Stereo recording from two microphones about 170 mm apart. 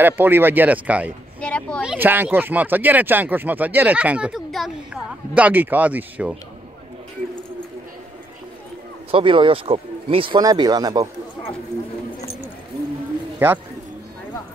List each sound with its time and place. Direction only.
0.0 s speech: 10° right (ahead or behind)
1.4 s speech: 5° left (ahead or behind)
1.8 s speech: 10° right (ahead or behind)
9.1 s speech: 30° right (ahead or behind)